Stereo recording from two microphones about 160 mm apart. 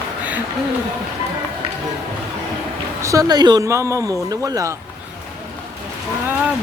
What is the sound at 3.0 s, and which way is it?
Speech, 20° right (ahead or behind).